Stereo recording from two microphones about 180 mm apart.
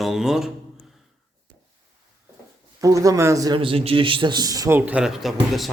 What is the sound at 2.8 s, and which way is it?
A man's voice, 20° right (ahead or behind).